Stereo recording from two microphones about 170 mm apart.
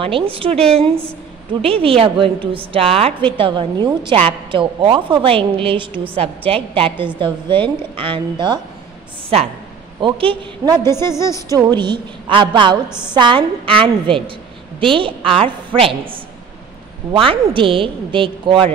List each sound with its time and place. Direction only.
0.0 s a woman's voice: 30° right (ahead or behind)
10.8 s a woman's voice: 15° left (ahead or behind)
11.4 s a woman's voice: 20° right (ahead or behind)